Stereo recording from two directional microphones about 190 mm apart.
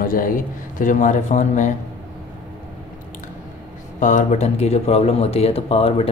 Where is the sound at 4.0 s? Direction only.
40° left (ahead or behind).